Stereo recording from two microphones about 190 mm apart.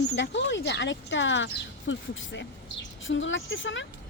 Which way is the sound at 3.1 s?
80° left.